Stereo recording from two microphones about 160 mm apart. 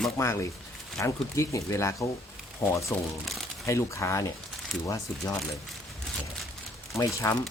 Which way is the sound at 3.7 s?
20° left (ahead or behind).